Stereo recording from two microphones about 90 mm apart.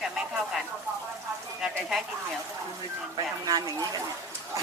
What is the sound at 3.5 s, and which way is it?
Speech, 45° right (ahead or behind).